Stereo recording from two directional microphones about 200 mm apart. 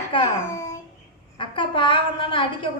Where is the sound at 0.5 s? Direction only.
15° left (ahead or behind).